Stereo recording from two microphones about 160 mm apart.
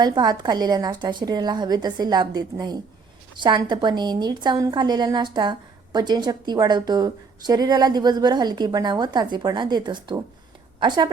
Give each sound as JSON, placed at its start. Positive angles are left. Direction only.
{"t": 0.0, "sound": "a woman's voice", "side_deg": -25}